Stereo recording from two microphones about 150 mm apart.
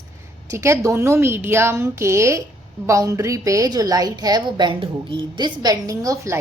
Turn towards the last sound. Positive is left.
turn(degrees=-20)  # may be behind; listen again after turning